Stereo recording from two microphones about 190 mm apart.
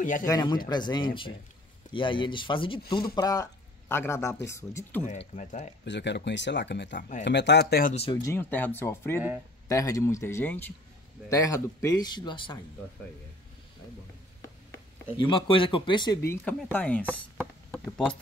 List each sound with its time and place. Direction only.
0.2 s a man's voice: 20° left (ahead or behind)
5.3 s speech: 40° left (ahead or behind)
5.9 s speech: 65° left (ahead or behind)
7.9 s speech: 30° left (ahead or behind)
8.2 s a man's voice: 10° left (ahead or behind)
15.1 s a man's voice: 25° left (ahead or behind)
16.3 s speech: 10° left (ahead or behind)
17.1 s a sound: 5° left (ahead or behind)